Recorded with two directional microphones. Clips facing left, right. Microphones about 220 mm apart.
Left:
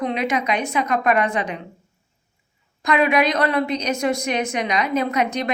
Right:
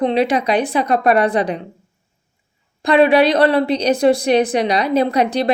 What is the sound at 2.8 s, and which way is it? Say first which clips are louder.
A woman's voice: right 6 dB; 30° right (ahead or behind).